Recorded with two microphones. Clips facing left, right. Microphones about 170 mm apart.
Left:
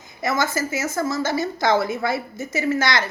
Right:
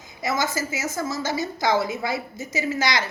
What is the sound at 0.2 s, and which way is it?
Speech, 50° left (ahead or behind).